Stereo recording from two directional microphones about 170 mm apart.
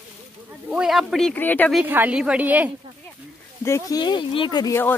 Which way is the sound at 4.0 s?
30° left (ahead or behind).